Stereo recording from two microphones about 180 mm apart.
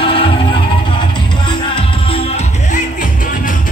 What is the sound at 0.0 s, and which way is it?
Music, 30° left (ahead or behind).